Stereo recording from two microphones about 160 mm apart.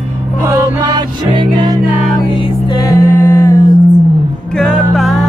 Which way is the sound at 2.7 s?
20° left (ahead or behind).